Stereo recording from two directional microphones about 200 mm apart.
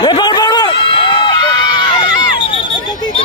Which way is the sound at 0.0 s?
25° left (ahead or behind).